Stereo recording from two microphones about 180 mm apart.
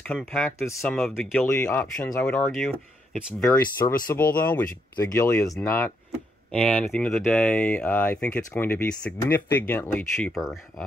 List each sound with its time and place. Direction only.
0.0 s speech: 5° left (ahead or behind)
0.7 s speech: 15° left (ahead or behind)
0.9 s speech: centre (ahead or behind)
1.4 s speech: 15° left (ahead or behind); by 3.4 s centre (ahead or behind)
3.5 s speech: 15° left (ahead or behind); by 10.6 s centre (ahead or behind)